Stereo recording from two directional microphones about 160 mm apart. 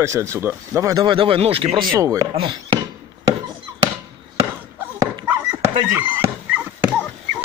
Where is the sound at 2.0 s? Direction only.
20° right (ahead or behind).